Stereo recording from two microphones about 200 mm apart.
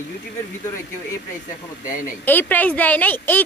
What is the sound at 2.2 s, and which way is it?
A woman's voice, 10° left (ahead or behind).